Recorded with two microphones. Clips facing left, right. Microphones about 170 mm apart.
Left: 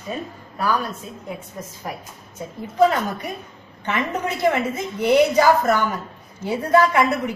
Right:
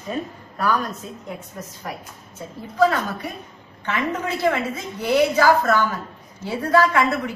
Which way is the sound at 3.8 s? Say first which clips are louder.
Left 1 dB; 20° left (ahead or behind).